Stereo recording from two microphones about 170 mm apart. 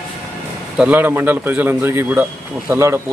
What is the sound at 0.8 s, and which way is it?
A man's voice, 10° right (ahead or behind).